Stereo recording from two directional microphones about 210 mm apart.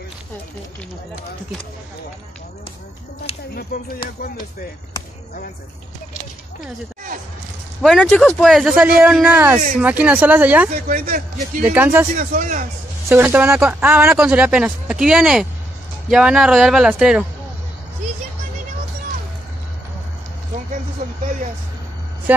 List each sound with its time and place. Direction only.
7.8 s speech: centre (ahead or behind)
10.7 s speech: 40° right (ahead or behind)
11.6 s speech: 10° right (ahead or behind)
12.2 s speech: 35° right (ahead or behind)
13.1 s speech: 10° right (ahead or behind)